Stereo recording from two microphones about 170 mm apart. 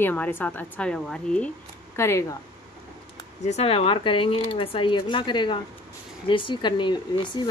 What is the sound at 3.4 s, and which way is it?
Speech, 35° left (ahead or behind).